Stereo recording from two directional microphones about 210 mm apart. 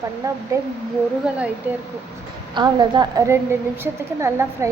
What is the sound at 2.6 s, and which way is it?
Speech, 20° right (ahead or behind).